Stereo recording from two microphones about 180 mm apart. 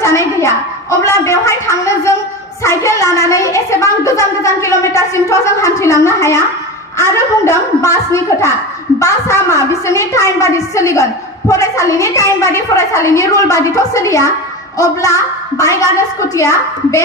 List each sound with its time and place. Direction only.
0.0 s a woman's voice: 15° left (ahead or behind)